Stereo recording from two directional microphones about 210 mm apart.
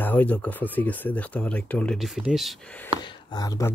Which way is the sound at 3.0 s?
20° left (ahead or behind).